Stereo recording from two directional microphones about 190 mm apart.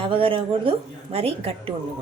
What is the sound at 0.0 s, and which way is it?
A woman's voice, 30° right (ahead or behind).